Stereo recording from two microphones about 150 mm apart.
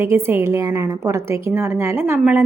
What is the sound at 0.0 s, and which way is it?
A woman's voice, 15° right (ahead or behind).